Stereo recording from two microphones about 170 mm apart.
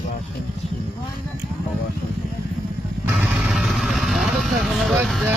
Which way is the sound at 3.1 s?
5° right (ahead or behind).